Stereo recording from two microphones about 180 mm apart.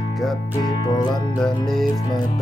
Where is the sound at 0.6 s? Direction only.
25° left (ahead or behind).